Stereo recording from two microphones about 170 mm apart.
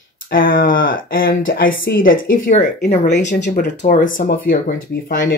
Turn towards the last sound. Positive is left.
turn(degrees=60)  # may be behind; listen again after turning